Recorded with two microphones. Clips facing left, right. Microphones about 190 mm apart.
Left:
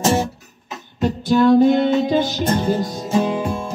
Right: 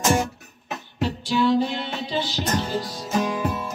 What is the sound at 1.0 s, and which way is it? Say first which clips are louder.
Music: left 7 dB; 50° left (ahead or behind).